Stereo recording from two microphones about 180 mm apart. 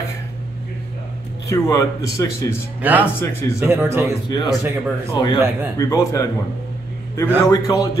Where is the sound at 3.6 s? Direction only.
15° right (ahead or behind).